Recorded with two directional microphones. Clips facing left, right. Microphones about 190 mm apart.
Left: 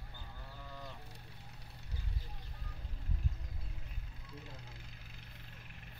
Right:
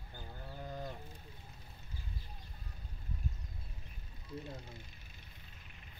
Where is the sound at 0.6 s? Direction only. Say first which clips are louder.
Right 7 dB; 45° right (ahead or behind).